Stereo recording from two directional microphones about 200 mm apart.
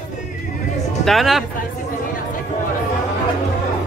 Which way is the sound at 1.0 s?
Centre (ahead or behind).